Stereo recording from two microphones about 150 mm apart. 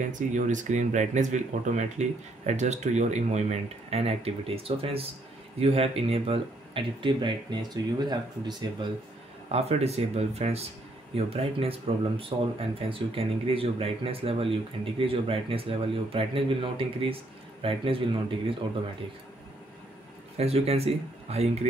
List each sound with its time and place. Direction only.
0.0 s speech: 55° right (ahead or behind); by 8.6 s 30° right (ahead or behind)
9.5 s speech: 45° right (ahead or behind)
20.3 s speech: 45° right (ahead or behind)